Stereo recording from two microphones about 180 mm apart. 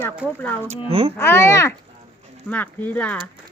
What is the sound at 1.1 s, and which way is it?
Speech, 15° left (ahead or behind).